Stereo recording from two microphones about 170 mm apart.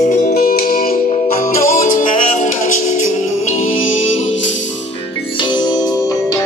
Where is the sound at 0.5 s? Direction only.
60° left (ahead or behind).